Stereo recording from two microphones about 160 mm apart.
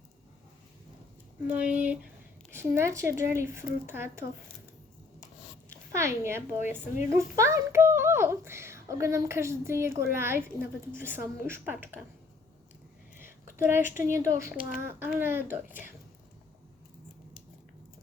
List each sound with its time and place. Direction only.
1.5 s a woman's voice: 10° right (ahead or behind)
5.9 s a woman's voice: 15° right (ahead or behind)
13.1 s a woman's voice: 15° right (ahead or behind)